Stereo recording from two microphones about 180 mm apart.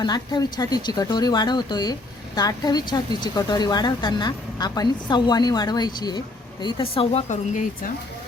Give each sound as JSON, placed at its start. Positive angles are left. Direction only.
{"t": 0.0, "sound": "speech", "side_deg": 25}